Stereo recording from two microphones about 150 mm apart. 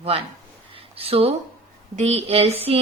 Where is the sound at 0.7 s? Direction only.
40° right (ahead or behind).